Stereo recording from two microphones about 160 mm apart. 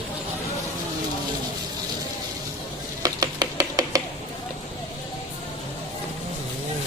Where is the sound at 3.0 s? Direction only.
25° right (ahead or behind).